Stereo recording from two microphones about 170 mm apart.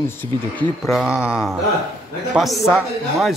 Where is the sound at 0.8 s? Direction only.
Centre (ahead or behind).